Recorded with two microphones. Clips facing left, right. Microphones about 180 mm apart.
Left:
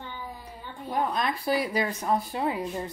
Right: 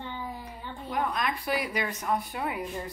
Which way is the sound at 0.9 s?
30° left (ahead or behind).